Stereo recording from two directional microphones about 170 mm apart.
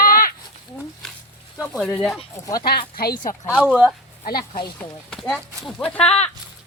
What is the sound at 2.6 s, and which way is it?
Speech, 65° left (ahead or behind).